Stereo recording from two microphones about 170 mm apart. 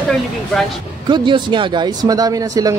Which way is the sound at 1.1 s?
25° right (ahead or behind).